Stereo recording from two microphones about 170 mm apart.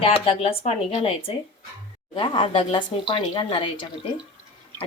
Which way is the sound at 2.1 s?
30° left (ahead or behind).